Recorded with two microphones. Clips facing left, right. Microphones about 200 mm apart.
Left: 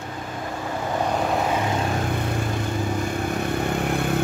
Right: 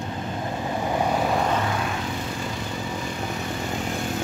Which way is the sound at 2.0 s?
55° left (ahead or behind).